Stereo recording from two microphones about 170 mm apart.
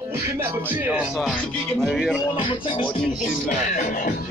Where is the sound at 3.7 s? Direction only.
45° left (ahead or behind).